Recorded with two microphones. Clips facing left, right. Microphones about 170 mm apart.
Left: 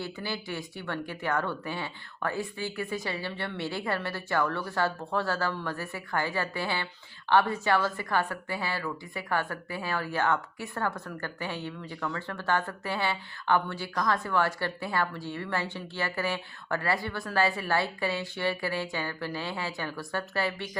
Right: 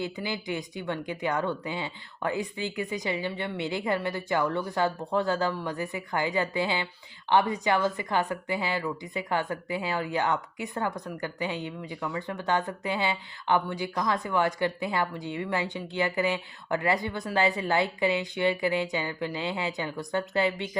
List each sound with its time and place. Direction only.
0.0 s a woman's voice: 15° right (ahead or behind)